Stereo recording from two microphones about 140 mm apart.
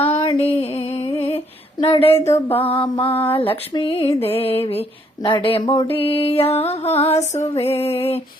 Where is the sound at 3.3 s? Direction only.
40° left (ahead or behind).